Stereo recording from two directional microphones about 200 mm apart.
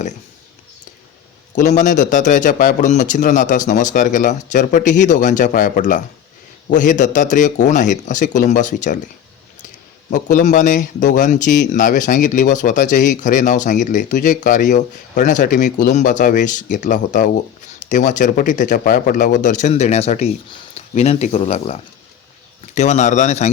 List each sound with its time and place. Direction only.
1.5 s a man's voice: 40° left (ahead or behind)
10.1 s a man's voice: 40° left (ahead or behind)